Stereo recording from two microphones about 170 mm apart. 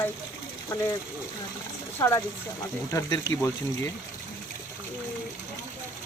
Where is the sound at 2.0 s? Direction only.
15° left (ahead or behind).